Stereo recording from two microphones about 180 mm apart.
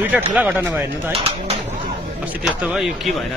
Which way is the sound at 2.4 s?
5° right (ahead or behind).